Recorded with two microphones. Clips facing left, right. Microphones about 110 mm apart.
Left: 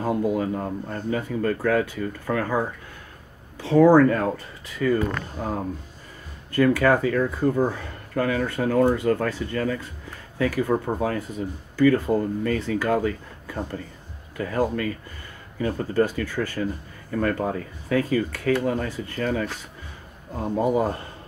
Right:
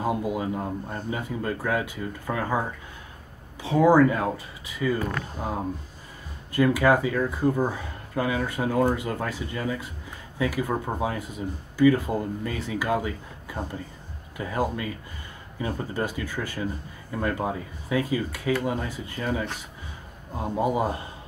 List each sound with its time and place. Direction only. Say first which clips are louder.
0.3 s speech: left 3 dB; 15° right (ahead or behind)
3.6 s speech: left 3 dB; 15° right (ahead or behind)
6.5 s speech: left 2 dB; 15° right (ahead or behind)
20.4 s speech: left 3 dB; 15° right (ahead or behind)